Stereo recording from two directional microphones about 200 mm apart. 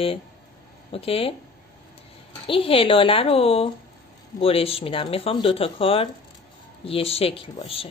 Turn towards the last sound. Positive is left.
turn(degrees=30)  # may be behind; listen again after turning